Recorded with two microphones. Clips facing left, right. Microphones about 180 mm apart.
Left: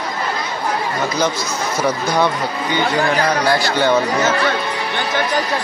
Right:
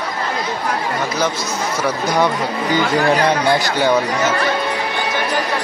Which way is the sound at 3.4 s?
20° right (ahead or behind).